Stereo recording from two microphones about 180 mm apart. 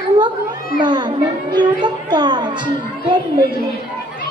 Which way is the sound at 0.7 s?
25° right (ahead or behind).